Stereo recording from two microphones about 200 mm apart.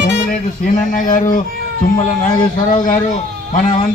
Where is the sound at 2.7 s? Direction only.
40° left (ahead or behind).